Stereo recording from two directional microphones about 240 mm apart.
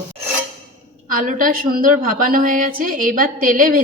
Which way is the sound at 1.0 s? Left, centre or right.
Right.